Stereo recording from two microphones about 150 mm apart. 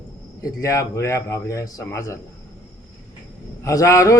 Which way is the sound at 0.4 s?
20° left (ahead or behind).